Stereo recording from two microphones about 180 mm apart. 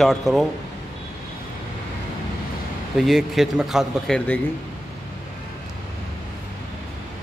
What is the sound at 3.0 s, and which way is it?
Speech, centre (ahead or behind).